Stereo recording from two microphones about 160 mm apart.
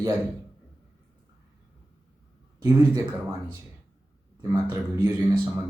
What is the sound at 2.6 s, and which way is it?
Speech, 20° right (ahead or behind).